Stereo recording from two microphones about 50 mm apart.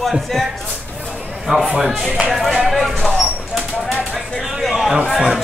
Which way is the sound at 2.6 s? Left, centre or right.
Centre.